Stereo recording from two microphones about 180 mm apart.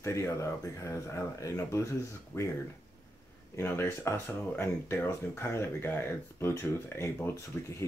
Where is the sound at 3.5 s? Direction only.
15° left (ahead or behind).